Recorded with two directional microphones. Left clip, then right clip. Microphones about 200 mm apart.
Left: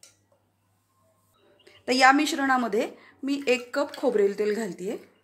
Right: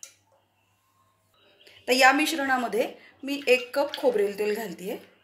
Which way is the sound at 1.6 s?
55° left (ahead or behind).